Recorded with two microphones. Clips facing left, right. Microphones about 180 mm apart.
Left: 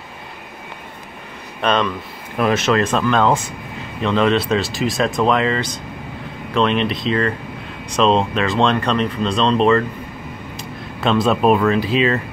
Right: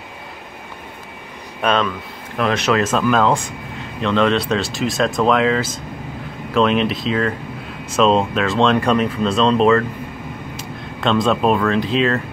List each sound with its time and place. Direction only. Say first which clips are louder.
1.6 s speech: even; 5° right (ahead or behind)